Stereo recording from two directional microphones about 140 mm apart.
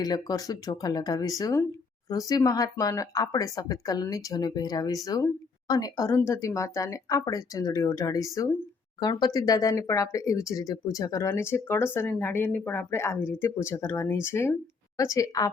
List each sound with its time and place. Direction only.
0.0 s speech: 30° left (ahead or behind)